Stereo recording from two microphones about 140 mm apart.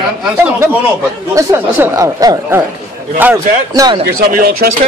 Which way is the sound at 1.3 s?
20° right (ahead or behind).